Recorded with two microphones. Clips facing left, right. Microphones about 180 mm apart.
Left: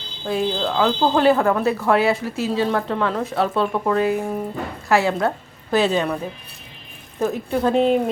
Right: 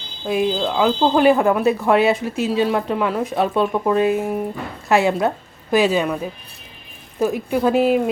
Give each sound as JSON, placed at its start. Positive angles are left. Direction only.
{"t": 0.3, "sound": "a woman's voice", "side_deg": -10}
{"t": 7.2, "sound": "speech", "side_deg": -10}